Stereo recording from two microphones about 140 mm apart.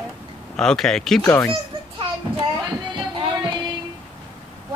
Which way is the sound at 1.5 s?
40° right (ahead or behind).